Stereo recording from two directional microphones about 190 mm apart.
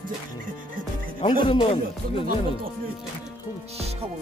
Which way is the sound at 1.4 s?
30° left (ahead or behind).